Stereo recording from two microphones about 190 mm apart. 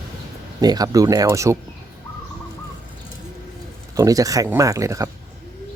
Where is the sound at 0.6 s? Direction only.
20° right (ahead or behind).